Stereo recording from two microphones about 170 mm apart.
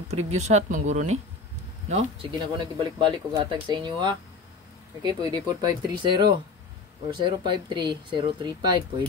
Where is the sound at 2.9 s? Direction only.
25° right (ahead or behind).